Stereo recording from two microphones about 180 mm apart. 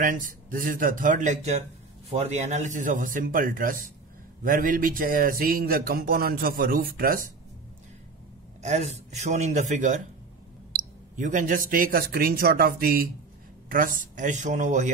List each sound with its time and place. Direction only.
0.0 s speech: 50° right (ahead or behind)
8.6 s speech: 40° right (ahead or behind)